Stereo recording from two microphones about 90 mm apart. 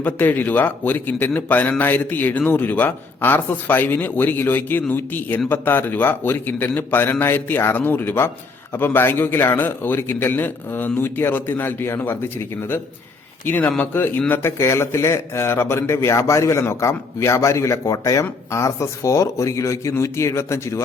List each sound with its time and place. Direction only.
0.0 s a man's voice: 20° left (ahead or behind)